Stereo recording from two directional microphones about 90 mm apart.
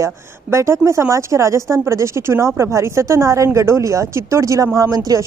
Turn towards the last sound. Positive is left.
turn(degrees=-40)  # may be behind; listen again after turning